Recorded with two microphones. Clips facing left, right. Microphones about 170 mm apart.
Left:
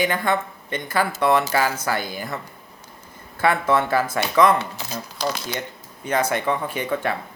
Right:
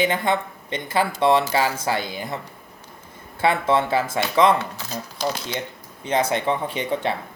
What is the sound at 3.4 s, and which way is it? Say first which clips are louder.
Speech: even; 25° right (ahead or behind).